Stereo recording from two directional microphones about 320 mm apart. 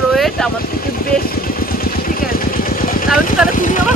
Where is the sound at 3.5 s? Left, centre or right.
Left.